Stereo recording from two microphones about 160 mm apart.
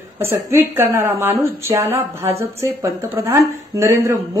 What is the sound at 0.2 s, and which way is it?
A woman's voice, 15° right (ahead or behind).